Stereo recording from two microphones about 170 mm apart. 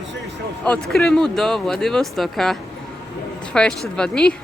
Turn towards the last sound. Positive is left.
turn(degrees=5)  # may be behind; listen again after turning